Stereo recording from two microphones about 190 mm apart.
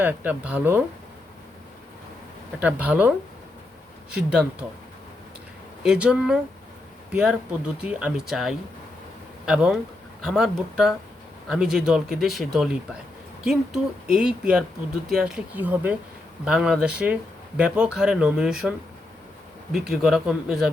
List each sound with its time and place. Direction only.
0.0 s speech: 10° right (ahead or behind)
2.6 s speech: 5° right (ahead or behind)
5.8 s speech: 5° right (ahead or behind)
14.1 s speech: 5° right (ahead or behind)
19.7 s speech: 5° right (ahead or behind)